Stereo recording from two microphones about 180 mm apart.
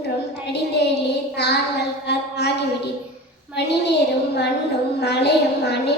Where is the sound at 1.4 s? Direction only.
65° left (ahead or behind).